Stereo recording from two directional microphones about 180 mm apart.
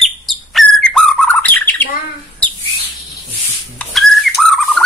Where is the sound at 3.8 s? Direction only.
Centre (ahead or behind).